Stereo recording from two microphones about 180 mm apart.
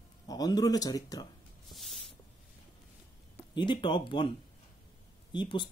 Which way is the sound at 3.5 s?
25° left (ahead or behind).